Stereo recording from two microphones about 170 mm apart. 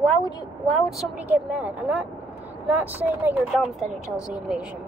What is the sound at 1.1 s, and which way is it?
Speech, 10° right (ahead or behind).